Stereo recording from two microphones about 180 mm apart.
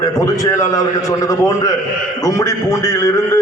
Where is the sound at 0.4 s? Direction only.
20° left (ahead or behind).